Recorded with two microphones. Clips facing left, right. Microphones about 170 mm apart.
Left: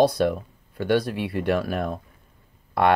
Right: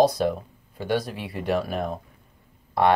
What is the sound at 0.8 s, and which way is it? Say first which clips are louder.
Speech: left 4 dB; 65° left (ahead or behind).